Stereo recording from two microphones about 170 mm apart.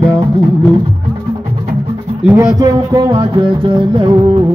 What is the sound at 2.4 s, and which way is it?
Speech, 20° right (ahead or behind).